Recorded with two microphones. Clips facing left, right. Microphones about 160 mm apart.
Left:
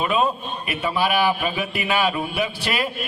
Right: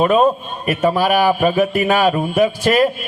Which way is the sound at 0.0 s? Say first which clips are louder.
Right 8 dB; 45° right (ahead or behind).